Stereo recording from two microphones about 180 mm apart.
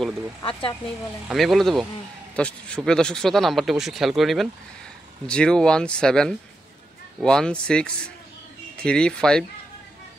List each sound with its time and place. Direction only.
0.4 s speech: 30° left (ahead or behind)
1.2 s speech: centre (ahead or behind)